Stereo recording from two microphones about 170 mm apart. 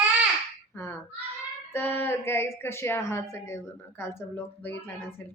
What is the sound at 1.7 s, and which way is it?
Speech, 15° left (ahead or behind).